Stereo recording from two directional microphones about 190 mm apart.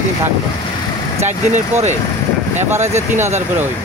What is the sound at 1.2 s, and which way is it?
Speech, 40° right (ahead or behind).